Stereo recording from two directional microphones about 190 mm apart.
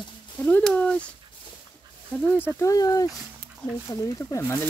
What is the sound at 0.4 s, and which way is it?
Speech, 10° left (ahead or behind).